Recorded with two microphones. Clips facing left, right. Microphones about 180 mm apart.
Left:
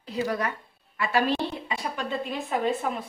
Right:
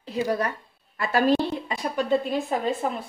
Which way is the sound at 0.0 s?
30° right (ahead or behind).